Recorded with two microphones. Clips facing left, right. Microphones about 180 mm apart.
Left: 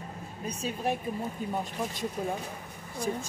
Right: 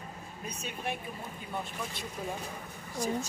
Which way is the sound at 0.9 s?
40° left (ahead or behind).